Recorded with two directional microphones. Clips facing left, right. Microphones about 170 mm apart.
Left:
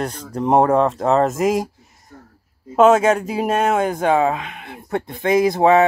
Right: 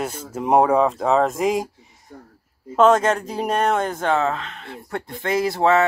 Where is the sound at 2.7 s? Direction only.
10° left (ahead or behind).